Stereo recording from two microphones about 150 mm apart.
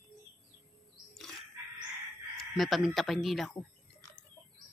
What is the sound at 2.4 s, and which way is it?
A woman's voice, centre (ahead or behind).